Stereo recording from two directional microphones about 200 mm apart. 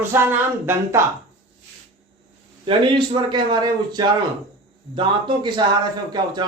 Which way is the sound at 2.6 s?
25° right (ahead or behind).